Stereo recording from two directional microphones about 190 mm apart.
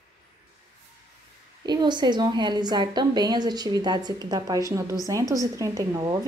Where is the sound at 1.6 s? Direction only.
20° right (ahead or behind).